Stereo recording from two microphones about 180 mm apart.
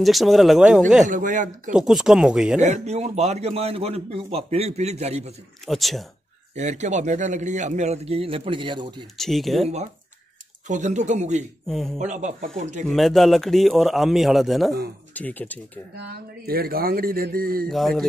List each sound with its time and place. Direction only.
0.0 s a man's voice: centre (ahead or behind)
1.0 s speech: 45° right (ahead or behind)
1.8 s a man's voice: 5° right (ahead or behind)
2.6 s a man's voice: 40° right (ahead or behind)
5.7 s a man's voice: centre (ahead or behind)
6.5 s a man's voice: 40° right (ahead or behind)
9.1 s a man's voice: centre (ahead or behind)
10.7 s a man's voice: 40° right (ahead or behind)
11.6 s a man's voice: centre (ahead or behind)
12.0 s speech: 40° right (ahead or behind)
12.8 s a man's voice: centre (ahead or behind)
16.0 s speech: 60° right (ahead or behind)
17.6 s a man's voice: centre (ahead or behind)